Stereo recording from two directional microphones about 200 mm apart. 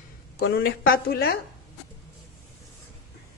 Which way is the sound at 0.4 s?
55° left (ahead or behind).